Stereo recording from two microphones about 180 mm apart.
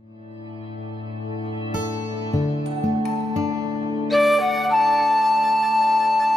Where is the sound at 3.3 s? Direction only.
20° right (ahead or behind).